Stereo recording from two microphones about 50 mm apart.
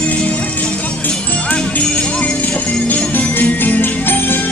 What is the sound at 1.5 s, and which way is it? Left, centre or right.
Music, left.